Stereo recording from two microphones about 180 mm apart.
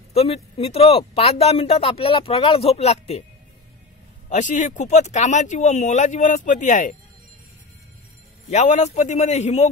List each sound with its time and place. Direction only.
0.1 s speech: 35° left (ahead or behind)
4.3 s speech: 40° left (ahead or behind)
8.5 s speech: 40° left (ahead or behind)